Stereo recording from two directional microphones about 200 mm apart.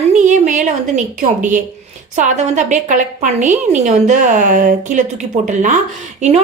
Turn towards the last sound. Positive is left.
turn(degrees=-35)  # may be behind; listen again after turning